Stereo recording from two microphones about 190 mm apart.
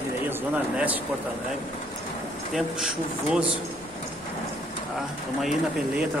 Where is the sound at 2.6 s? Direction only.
Centre (ahead or behind).